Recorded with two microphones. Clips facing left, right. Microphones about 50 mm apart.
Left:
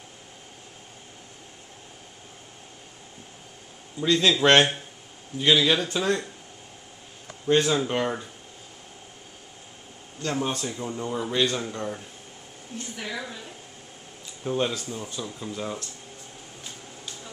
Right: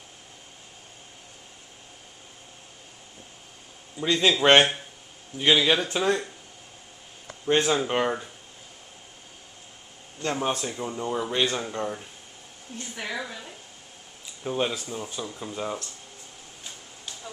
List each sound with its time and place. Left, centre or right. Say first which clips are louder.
4.0 s speech: left 1 dB; centre
7.4 s speech: left 1 dB; centre
10.4 s speech: right 1 dB; centre
13.0 s speech: right 2 dB; centre
14.4 s speech: left 1 dB; centre